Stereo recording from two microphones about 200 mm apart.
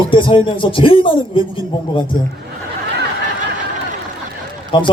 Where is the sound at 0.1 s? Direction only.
25° left (ahead or behind).